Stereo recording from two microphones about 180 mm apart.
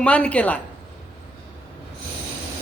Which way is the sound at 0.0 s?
5° left (ahead or behind).